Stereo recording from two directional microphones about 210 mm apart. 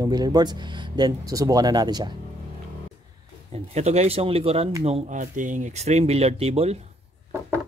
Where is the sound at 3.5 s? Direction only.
30° right (ahead or behind).